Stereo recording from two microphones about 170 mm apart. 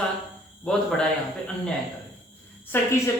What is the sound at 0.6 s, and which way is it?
Speech, 5° left (ahead or behind).